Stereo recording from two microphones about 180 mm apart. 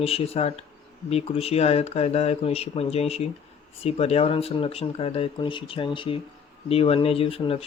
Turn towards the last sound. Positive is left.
turn(degrees=30)  # may be behind; listen again after turning